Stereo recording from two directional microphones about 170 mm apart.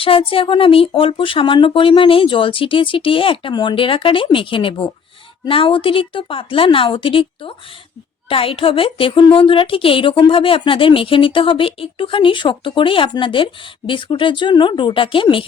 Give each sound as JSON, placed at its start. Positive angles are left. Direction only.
{"t": 0.0, "sound": "speech", "side_deg": 30}